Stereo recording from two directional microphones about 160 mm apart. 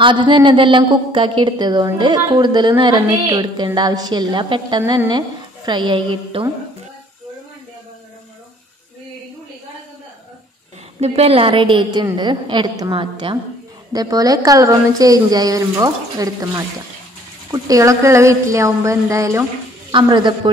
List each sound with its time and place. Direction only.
0.0 s a woman's voice: 30° right (ahead or behind)
11.0 s a woman's voice: 40° right (ahead or behind)